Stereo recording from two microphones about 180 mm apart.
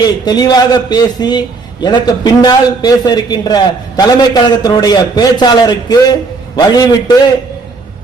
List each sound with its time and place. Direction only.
0.0 s a man's voice: 25° left (ahead or behind)